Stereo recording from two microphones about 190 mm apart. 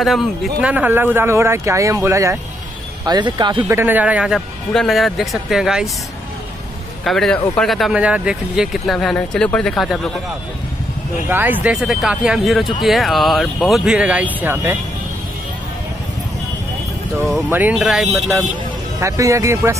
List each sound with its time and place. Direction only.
0.0 s speech: centre (ahead or behind); by 3.7 s 25° right (ahead or behind)
3.7 s speech: 10° right (ahead or behind)
7.1 s speech: centre (ahead or behind)
11.2 s speech: 10° right (ahead or behind)
17.5 s speech: 10° right (ahead or behind)
18.9 s speech: 15° right (ahead or behind)